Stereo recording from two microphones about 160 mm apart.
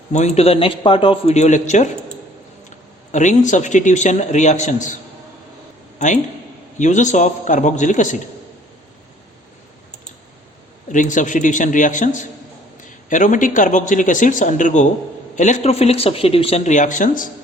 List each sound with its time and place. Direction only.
0.1 s a man's voice: 45° left (ahead or behind)
6.7 s a man's voice: 50° left (ahead or behind)
10.9 s a man's voice: 50° left (ahead or behind)